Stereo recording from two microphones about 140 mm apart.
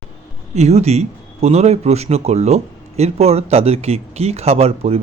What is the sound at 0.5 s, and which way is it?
Speech, 50° right (ahead or behind).